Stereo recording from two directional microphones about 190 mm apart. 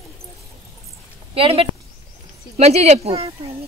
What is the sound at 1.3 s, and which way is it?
A woman's voice, 30° right (ahead or behind).